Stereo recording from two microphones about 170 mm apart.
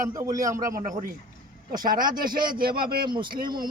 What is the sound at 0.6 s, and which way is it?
A man's voice, 55° right (ahead or behind).